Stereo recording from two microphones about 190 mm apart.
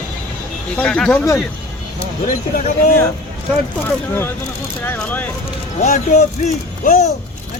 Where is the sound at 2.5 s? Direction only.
40° left (ahead or behind).